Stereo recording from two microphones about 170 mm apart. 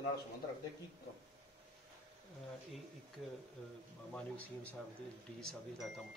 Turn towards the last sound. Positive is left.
turn(degrees=10)  # may be behind; listen again after turning